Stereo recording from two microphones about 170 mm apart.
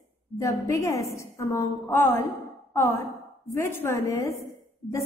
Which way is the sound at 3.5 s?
15° left (ahead or behind).